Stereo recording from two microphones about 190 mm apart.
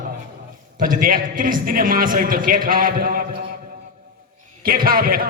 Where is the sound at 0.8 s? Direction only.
45° right (ahead or behind).